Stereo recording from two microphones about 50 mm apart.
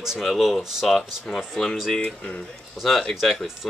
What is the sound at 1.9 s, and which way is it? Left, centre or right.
Speech, left.